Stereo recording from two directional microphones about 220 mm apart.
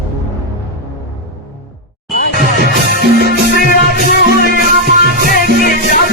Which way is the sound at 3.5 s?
45° left (ahead or behind).